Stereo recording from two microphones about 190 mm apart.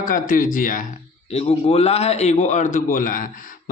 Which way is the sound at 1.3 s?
35° left (ahead or behind).